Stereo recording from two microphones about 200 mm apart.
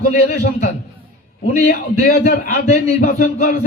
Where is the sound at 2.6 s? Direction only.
35° left (ahead or behind).